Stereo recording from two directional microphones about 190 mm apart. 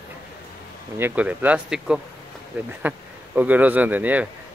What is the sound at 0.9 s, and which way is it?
Speech, 10° right (ahead or behind).